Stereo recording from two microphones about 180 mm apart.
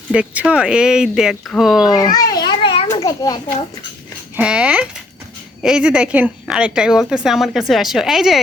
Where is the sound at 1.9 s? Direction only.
20° left (ahead or behind).